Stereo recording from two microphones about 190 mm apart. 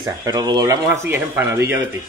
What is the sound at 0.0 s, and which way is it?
Speech, 20° right (ahead or behind).